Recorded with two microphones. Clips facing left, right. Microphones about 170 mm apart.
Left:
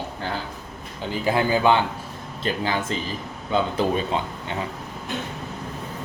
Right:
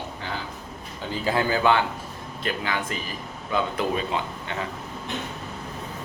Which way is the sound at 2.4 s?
30° left (ahead or behind).